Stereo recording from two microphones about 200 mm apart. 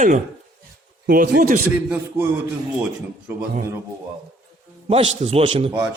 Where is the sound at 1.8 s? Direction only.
10° right (ahead or behind).